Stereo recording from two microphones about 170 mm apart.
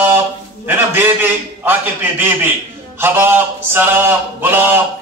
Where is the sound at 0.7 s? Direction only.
10° right (ahead or behind).